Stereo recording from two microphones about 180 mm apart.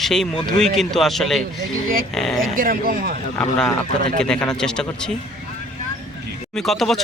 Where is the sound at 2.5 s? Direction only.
50° right (ahead or behind).